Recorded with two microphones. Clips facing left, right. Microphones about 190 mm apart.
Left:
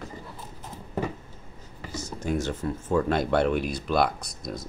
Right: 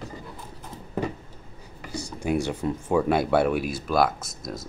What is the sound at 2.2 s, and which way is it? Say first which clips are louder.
Speech: right 3 dB; 10° right (ahead or behind).